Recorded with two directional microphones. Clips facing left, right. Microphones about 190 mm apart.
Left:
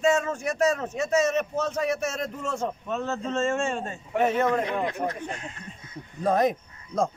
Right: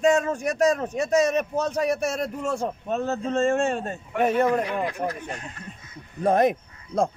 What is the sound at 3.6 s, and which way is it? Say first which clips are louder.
Speech: right 3 dB; 60° right (ahead or behind).